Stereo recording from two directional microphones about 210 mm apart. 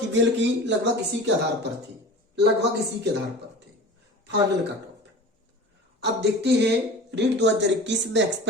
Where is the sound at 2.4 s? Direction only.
55° right (ahead or behind).